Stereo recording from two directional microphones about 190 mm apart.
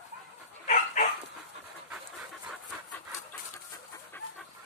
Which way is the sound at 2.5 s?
5° left (ahead or behind).